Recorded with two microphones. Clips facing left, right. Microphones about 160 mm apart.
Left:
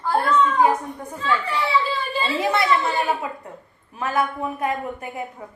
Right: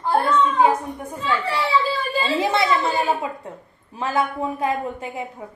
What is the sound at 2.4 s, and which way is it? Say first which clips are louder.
A woman's voice: left 1 dB; 25° right (ahead or behind).